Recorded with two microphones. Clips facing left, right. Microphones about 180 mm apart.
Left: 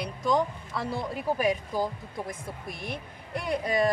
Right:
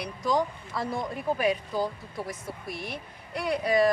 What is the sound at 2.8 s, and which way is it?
Speech, 50° left (ahead or behind).